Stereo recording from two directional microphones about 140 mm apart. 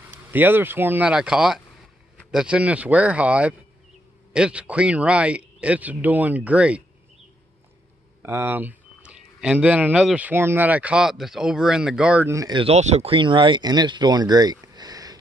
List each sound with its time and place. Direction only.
0.1 s speech: 15° right (ahead or behind)
8.2 s speech: 15° right (ahead or behind)
12.3 s speech: 25° right (ahead or behind)
12.5 s speech: 50° right (ahead or behind); by 15.1 s 25° right (ahead or behind)